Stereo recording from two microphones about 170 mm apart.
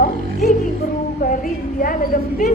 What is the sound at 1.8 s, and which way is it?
Speech, 55° left (ahead or behind).